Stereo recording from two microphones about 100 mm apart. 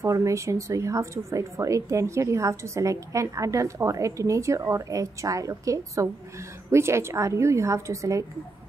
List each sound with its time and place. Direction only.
0.0 s a woman's voice: 30° right (ahead or behind)